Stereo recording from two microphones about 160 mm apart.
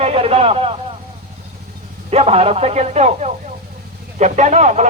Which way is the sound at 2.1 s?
40° right (ahead or behind).